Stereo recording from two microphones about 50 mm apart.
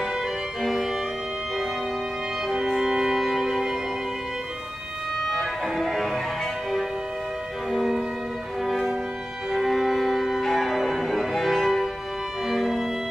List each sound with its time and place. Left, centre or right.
0.0 s music: centre
2.4 s music: centre
5.2 s music: centre
12.4 s violin: centre